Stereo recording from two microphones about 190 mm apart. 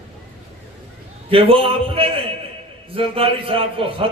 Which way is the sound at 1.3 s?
30° right (ahead or behind).